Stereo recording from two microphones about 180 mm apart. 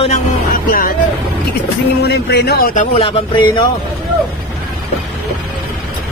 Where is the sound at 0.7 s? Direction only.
55° left (ahead or behind).